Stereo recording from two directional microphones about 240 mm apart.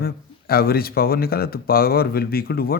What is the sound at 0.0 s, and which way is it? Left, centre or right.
A man's voice, left.